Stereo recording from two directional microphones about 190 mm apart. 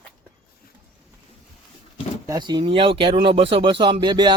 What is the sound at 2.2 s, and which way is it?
Speech, 20° right (ahead or behind).